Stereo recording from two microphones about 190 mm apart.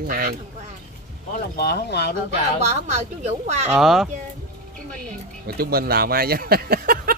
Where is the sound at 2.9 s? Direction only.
35° right (ahead or behind).